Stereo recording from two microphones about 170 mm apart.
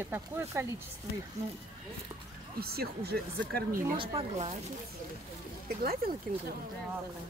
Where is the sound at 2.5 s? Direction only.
65° right (ahead or behind).